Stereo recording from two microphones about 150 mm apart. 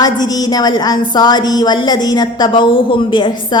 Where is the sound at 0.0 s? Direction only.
25° left (ahead or behind).